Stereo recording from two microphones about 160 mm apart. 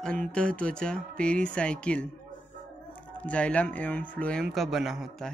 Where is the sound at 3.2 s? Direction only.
10° left (ahead or behind).